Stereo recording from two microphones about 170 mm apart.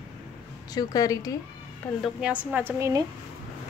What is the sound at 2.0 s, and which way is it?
A woman's voice, 5° right (ahead or behind).